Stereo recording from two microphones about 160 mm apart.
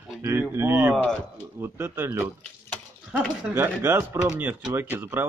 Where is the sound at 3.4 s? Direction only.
15° right (ahead or behind).